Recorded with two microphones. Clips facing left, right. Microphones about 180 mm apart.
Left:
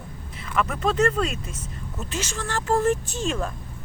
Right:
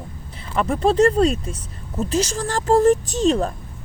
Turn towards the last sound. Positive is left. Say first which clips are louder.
# right 9 dB
turn(degrees=-35)  # may be behind; listen again after turning